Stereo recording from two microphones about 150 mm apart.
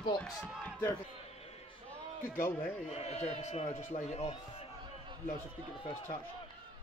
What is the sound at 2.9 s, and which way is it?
A man's voice, 45° left (ahead or behind).